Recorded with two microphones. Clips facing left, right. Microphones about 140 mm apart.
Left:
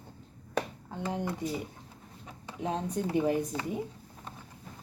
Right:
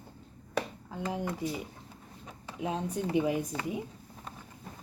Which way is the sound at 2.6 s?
10° right (ahead or behind).